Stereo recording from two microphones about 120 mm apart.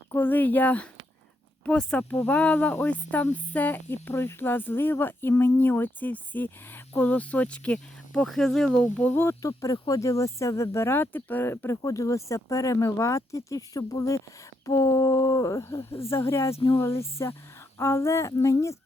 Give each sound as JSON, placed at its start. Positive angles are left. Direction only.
{"t": 0.1, "sound": "speech", "side_deg": 15}